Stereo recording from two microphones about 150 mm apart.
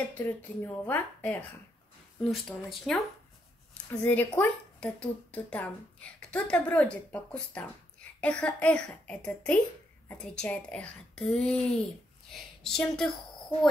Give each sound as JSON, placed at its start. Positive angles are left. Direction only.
{"t": 0.1, "sound": "a woman's voice", "side_deg": 15}